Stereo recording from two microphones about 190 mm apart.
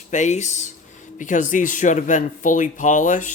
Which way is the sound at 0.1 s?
40° left (ahead or behind).